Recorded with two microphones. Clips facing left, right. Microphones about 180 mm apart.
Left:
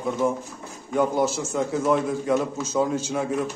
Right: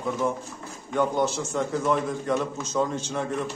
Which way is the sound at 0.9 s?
5° left (ahead or behind).